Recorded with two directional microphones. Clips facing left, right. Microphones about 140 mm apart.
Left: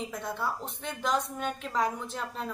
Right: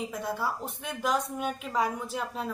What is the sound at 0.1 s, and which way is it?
A woman's voice, 5° right (ahead or behind).